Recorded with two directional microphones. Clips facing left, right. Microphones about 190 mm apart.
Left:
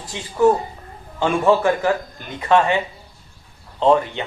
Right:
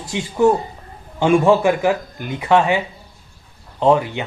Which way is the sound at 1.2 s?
15° right (ahead or behind).